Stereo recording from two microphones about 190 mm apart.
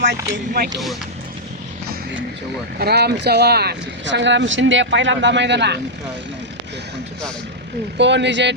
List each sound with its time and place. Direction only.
0.0 s speech: 60° right (ahead or behind)
2.7 s speech: 60° right (ahead or behind)
7.9 s speech: 65° right (ahead or behind)